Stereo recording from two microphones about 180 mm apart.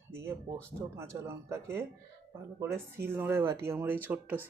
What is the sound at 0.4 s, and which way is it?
Speech, 15° right (ahead or behind).